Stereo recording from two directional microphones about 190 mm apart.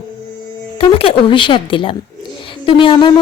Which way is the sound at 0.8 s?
30° left (ahead or behind).